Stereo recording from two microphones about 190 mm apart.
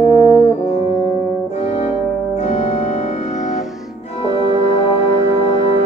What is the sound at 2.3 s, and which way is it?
Organ, 35° left (ahead or behind).